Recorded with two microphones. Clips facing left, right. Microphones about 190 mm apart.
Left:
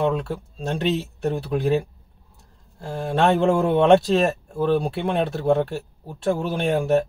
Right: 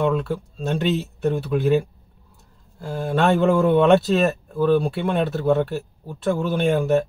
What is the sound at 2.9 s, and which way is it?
Speech, 25° left (ahead or behind).